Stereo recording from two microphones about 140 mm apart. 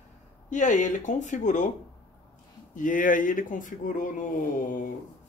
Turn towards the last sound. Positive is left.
turn(degrees=70)  # may be behind; listen again after turning